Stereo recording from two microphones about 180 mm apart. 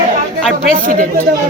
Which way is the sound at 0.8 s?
45° right (ahead or behind).